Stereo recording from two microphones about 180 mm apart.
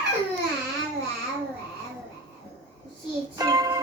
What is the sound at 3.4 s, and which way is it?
Child singing, 20° right (ahead or behind).